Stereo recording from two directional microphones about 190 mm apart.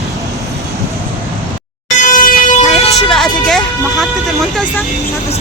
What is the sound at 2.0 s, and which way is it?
Vehicle, 45° left (ahead or behind).